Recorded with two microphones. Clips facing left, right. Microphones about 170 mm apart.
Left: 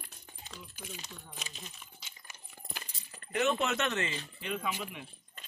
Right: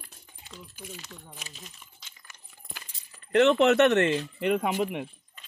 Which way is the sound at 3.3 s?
70° right (ahead or behind).